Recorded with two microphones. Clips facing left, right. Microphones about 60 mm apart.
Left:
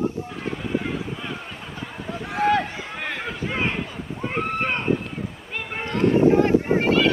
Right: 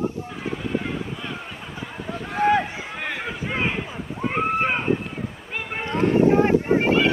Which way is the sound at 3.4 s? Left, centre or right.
Centre.